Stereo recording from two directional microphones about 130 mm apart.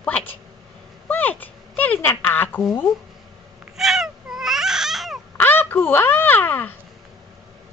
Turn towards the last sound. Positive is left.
turn(degrees=15)  # may be behind; listen again after turning